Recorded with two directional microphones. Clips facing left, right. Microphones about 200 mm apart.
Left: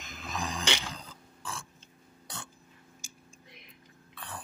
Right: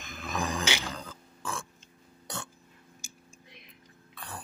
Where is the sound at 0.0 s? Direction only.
55° right (ahead or behind).